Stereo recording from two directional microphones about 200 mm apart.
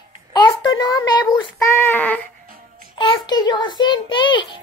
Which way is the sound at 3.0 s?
25° left (ahead or behind).